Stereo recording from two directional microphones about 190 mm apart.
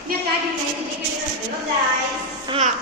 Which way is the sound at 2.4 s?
30° right (ahead or behind).